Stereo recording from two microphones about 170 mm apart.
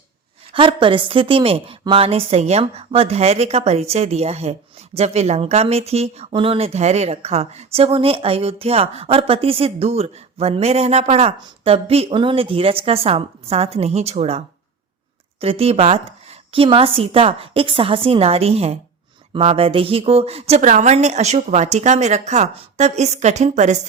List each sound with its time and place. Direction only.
0.5 s speech: 30° right (ahead or behind)